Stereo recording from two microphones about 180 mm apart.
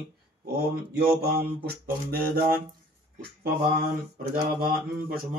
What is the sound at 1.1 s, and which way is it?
Mantra, 60° right (ahead or behind).